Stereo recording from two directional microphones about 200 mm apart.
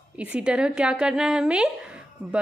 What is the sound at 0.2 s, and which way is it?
A woman's voice, 5° right (ahead or behind).